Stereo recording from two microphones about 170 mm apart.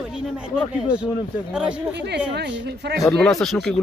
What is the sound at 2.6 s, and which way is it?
Speech, 75° right (ahead or behind).